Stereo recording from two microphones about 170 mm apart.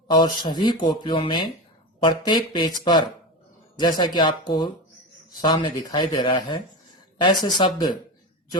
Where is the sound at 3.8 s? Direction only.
25° left (ahead or behind).